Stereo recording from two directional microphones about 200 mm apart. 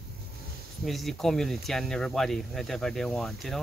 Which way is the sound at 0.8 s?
Centre (ahead or behind).